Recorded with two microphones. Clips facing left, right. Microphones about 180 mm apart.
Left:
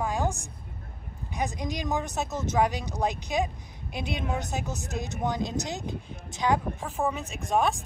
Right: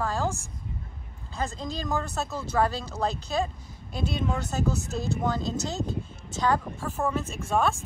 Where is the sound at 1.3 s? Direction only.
15° left (ahead or behind).